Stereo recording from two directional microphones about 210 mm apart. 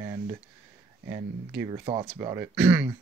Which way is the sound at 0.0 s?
15° right (ahead or behind).